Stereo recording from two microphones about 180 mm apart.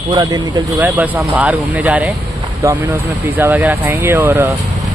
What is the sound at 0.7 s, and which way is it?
Speech, 10° right (ahead or behind).